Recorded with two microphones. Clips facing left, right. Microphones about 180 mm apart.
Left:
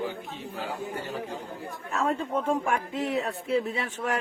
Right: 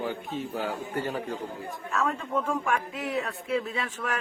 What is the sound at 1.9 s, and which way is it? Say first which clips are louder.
Speech: left 1 dB; 30° left (ahead or behind).